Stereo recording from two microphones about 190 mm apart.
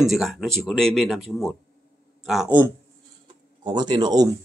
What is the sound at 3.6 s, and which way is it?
Speech, 20° right (ahead or behind).